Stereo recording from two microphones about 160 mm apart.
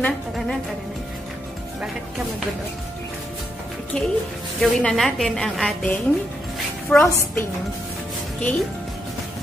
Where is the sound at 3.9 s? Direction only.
5° left (ahead or behind).